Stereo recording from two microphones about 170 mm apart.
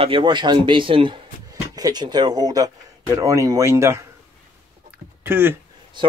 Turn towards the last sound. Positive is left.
turn(degrees=-30)  # may be behind; listen again after turning